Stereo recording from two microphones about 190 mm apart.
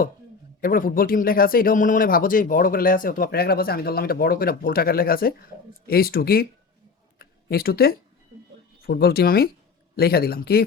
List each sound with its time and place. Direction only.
0.6 s speech: 45° left (ahead or behind)